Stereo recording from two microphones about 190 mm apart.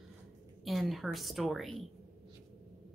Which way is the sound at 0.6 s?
Centre (ahead or behind).